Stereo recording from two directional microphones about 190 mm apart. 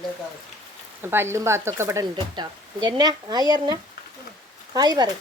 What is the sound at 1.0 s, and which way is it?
Speech, 10° right (ahead or behind).